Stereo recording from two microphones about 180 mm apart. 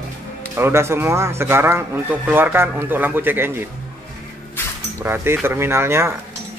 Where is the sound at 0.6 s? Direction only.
15° right (ahead or behind).